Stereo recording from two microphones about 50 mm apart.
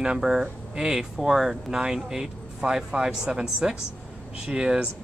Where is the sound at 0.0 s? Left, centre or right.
Centre.